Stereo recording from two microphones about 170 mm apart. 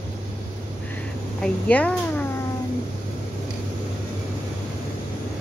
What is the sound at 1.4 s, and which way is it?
Speech, 5° left (ahead or behind).